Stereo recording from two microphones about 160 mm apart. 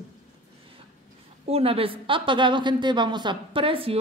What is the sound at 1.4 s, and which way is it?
A woman's voice, 40° right (ahead or behind).